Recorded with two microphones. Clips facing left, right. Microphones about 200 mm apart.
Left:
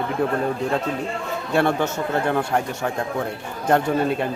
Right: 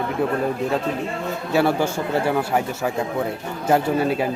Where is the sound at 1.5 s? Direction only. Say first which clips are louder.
Right 1 dB; 5° right (ahead or behind).